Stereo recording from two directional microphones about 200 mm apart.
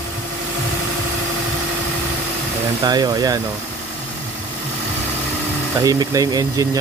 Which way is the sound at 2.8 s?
20° right (ahead or behind).